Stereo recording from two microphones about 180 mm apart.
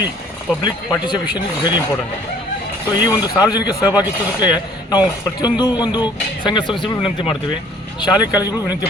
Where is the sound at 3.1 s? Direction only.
20° left (ahead or behind).